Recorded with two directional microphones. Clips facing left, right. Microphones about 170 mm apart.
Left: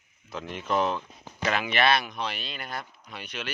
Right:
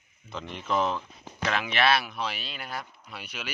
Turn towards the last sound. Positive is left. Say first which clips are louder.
# left 2 dB
turn(degrees=-5)  # may be behind; listen again after turning